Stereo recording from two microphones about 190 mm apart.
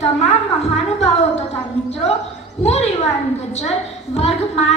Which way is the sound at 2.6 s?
35° left (ahead or behind).